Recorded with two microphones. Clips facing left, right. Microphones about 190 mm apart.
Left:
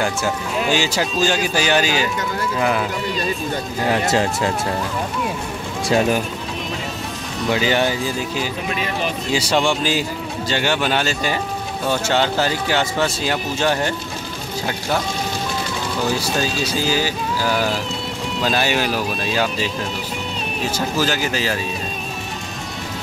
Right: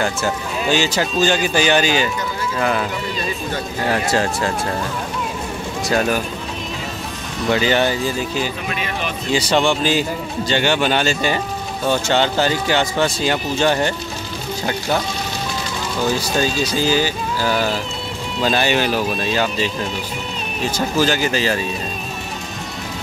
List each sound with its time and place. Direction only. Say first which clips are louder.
0.0 s speech: right 1 dB; 10° left (ahead or behind)
4.0 s speech: left 1 dB; 20° left (ahead or behind)
4.4 s speech: even; 5° left (ahead or behind)
5.9 s speech: left 1 dB; 20° left (ahead or behind)
7.4 s speech: right 2 dB; 5° left (ahead or behind)
9.3 s speech: right 2 dB; 10° left (ahead or behind)
16.0 s speech: right 3 dB; 5° left (ahead or behind)